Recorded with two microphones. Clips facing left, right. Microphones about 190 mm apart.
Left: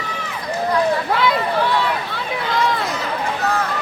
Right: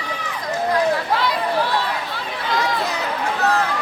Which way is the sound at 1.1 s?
60° left (ahead or behind).